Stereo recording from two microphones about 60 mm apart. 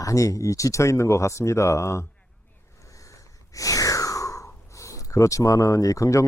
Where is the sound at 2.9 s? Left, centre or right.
Left.